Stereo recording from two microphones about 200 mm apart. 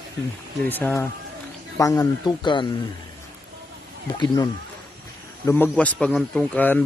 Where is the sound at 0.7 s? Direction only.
10° left (ahead or behind).